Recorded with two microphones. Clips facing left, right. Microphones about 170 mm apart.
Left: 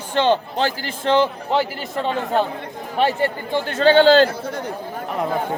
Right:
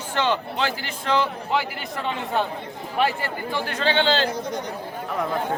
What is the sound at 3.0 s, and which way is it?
Speech, 25° left (ahead or behind).